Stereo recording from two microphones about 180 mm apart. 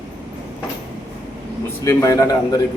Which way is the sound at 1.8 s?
15° left (ahead or behind).